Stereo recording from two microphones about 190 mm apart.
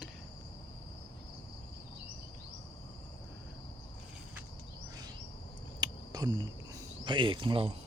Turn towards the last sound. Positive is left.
turn(degrees=-30)  # may be behind; listen again after turning